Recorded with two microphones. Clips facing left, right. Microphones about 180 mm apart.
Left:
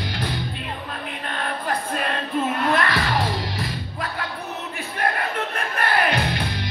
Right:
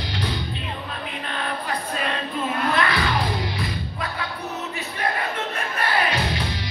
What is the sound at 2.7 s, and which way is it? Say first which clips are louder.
Music: even; 45° left (ahead or behind).